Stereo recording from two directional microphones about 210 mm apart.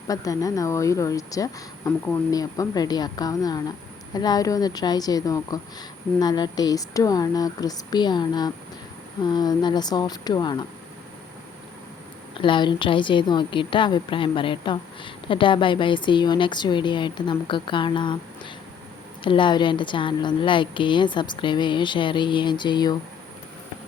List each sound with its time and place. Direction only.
0.1 s a woman's voice: 15° left (ahead or behind)
12.4 s a woman's voice: 25° left (ahead or behind)
19.2 s a woman's voice: 25° left (ahead or behind)